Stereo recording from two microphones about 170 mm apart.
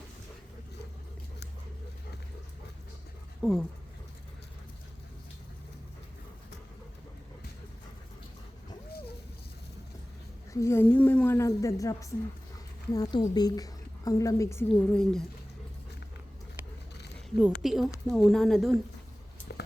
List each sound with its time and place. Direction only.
3.4 s a woman's voice: centre (ahead or behind)
10.5 s a woman's voice: 15° left (ahead or behind)
14.7 s a woman's voice: 5° left (ahead or behind)
17.2 s a woman's voice: centre (ahead or behind)